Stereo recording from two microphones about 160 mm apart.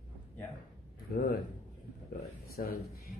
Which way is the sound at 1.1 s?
75° left (ahead or behind).